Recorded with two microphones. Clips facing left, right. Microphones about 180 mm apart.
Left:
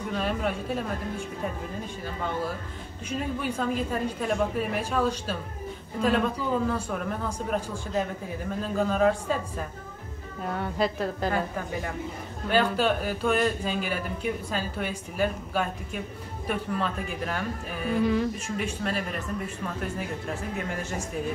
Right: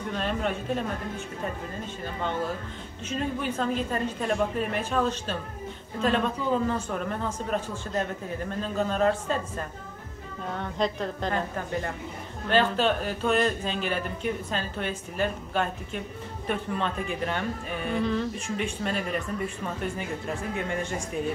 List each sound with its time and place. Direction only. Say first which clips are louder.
0.1 s speech: even; 5° left (ahead or behind)
3.1 s speech: right 1 dB; 10° left (ahead or behind)